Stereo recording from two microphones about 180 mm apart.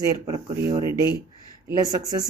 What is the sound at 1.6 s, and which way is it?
Speech, 20° right (ahead or behind).